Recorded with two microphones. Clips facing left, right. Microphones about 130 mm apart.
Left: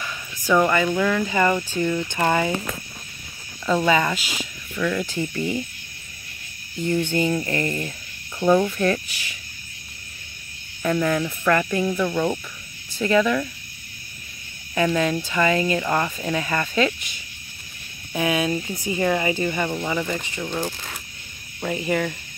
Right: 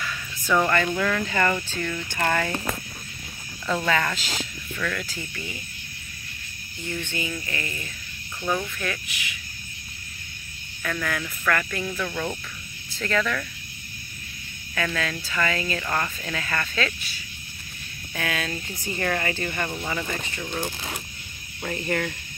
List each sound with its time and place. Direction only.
0.5 s speech: 10° left (ahead or behind)
3.6 s speech: 10° left (ahead or behind); by 5.6 s 30° left (ahead or behind)
6.9 s music: 35° left (ahead or behind)
10.8 s speech: 25° left (ahead or behind)
14.8 s speech: 20° left (ahead or behind)
21.5 s speech: 10° left (ahead or behind)